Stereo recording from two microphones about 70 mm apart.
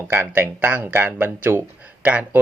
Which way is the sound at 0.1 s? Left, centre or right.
Right.